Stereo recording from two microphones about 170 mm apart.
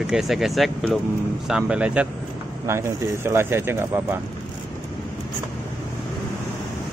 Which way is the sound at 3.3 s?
15° right (ahead or behind).